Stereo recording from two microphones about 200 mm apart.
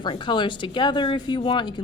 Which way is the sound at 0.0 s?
25° left (ahead or behind).